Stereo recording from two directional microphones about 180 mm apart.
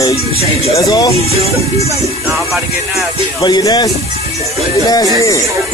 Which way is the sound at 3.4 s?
20° left (ahead or behind).